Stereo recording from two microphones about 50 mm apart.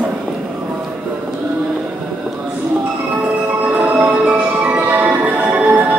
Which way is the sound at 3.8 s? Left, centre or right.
Right.